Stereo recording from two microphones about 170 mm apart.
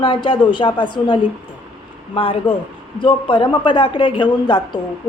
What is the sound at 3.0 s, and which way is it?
Speech, 30° left (ahead or behind).